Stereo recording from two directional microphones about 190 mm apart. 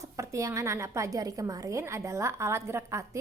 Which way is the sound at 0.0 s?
15° right (ahead or behind).